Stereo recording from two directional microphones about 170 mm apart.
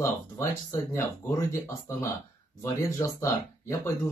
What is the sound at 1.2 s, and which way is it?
Speech, 15° left (ahead or behind).